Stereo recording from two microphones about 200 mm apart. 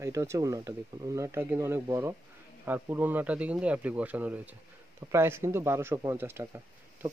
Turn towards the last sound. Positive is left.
turn(degrees=-10)  # may be behind; listen again after turning